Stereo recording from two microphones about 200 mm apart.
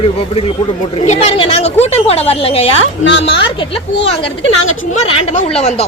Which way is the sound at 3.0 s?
65° left (ahead or behind).